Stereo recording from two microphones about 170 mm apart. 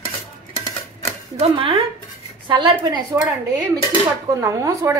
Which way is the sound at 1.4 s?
30° right (ahead or behind).